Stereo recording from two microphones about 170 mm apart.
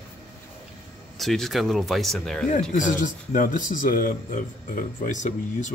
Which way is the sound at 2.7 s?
50° left (ahead or behind).